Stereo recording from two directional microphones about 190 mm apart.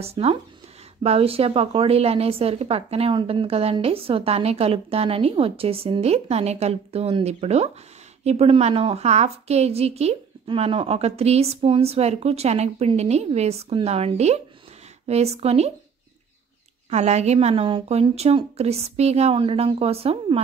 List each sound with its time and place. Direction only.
0.0 s a woman's voice: 30° right (ahead or behind)
16.9 s a woman's voice: 35° right (ahead or behind)